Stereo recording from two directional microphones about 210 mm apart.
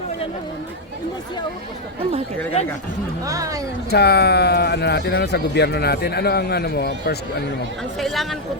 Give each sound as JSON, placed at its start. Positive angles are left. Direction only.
{"t": 3.2, "sound": "speech", "side_deg": -15}
{"t": 3.8, "sound": "speech", "side_deg": 50}
{"t": 7.9, "sound": "speech", "side_deg": 0}